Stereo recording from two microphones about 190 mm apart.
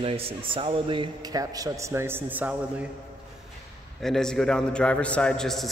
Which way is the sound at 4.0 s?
Centre (ahead or behind).